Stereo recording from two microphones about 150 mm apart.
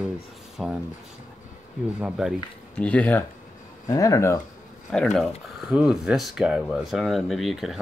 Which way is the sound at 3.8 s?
20° left (ahead or behind).